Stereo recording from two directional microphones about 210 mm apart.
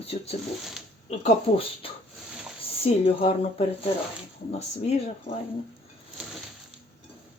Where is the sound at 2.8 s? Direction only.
25° left (ahead or behind).